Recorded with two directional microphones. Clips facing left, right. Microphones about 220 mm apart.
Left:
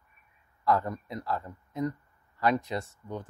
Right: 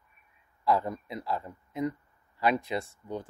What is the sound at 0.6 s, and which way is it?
Speech, 10° right (ahead or behind).